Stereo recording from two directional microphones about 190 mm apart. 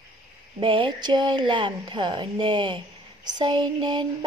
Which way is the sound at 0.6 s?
25° right (ahead or behind).